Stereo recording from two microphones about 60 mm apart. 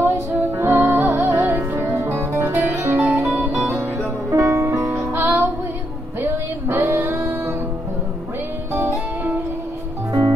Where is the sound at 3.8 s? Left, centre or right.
Right.